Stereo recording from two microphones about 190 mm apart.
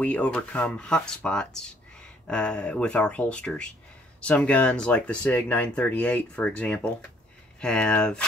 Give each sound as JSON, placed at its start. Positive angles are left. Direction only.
{"t": 0.0, "sound": "speech", "side_deg": 5}